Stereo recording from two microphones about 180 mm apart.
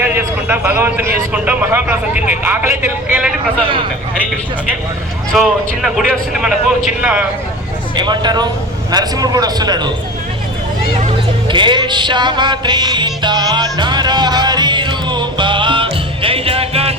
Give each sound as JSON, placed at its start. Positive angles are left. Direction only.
{"t": 0.0, "sound": "a man's voice", "side_deg": -10}
{"t": 5.3, "sound": "a man's voice", "side_deg": 0}
{"t": 7.9, "sound": "a man's voice", "side_deg": -25}
{"t": 11.4, "sound": "music", "side_deg": -25}